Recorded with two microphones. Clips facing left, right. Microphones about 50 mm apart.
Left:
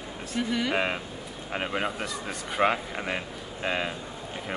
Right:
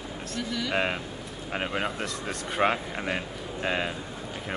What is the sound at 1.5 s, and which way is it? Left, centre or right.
Speech, centre.